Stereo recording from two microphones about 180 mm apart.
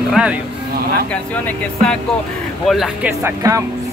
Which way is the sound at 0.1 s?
5° right (ahead or behind).